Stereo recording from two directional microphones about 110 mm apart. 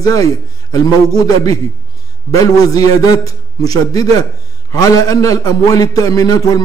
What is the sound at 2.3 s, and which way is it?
A man's voice, 30° left (ahead or behind).